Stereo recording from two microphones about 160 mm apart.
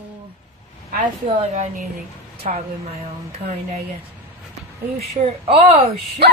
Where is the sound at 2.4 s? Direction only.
45° right (ahead or behind).